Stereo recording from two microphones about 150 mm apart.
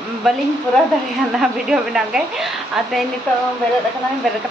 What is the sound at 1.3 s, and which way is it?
Speech, 5° right (ahead or behind).